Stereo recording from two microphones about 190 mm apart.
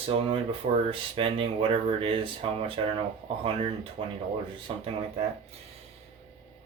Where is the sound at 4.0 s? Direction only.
25° right (ahead or behind).